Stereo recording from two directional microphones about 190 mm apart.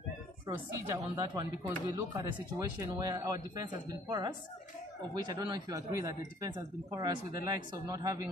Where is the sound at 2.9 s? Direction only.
20° right (ahead or behind).